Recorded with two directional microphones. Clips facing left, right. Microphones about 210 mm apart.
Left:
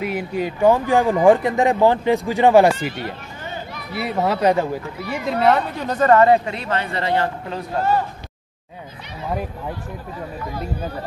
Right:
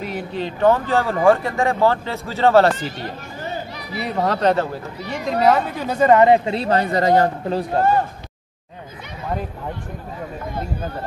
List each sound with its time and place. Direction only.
0.0 s speech: 10° left (ahead or behind)
4.0 s speech: 5° left (ahead or behind); by 6.5 s 20° right (ahead or behind)
6.5 s speech: 35° right (ahead or behind)